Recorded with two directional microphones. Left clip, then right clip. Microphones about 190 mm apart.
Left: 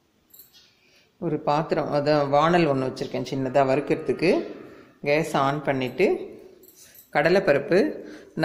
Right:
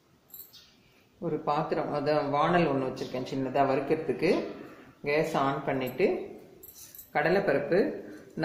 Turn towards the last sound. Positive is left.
turn(degrees=50)  # may be behind; listen again after turning